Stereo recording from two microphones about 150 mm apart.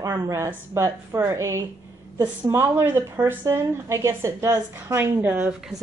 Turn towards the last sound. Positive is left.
turn(degrees=-10)  # may be behind; listen again after turning